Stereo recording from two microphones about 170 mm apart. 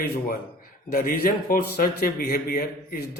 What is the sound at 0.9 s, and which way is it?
A man's voice, 60° left (ahead or behind).